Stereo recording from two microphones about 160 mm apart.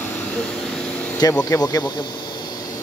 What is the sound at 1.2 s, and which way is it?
Speech, 25° left (ahead or behind).